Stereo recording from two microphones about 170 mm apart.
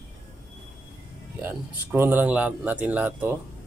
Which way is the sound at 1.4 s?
10° right (ahead or behind).